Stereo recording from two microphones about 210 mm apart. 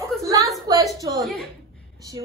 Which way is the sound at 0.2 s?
15° right (ahead or behind).